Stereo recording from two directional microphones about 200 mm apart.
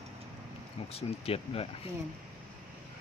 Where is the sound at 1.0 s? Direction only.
30° left (ahead or behind).